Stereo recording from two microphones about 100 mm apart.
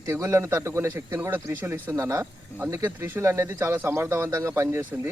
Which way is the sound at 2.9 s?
25° right (ahead or behind).